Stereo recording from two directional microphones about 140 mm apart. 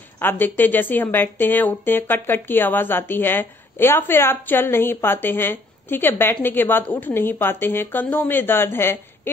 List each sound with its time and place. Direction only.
0.2 s a woman's voice: 15° left (ahead or behind)